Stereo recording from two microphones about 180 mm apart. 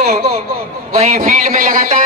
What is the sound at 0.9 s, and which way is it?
A man's voice, 45° right (ahead or behind).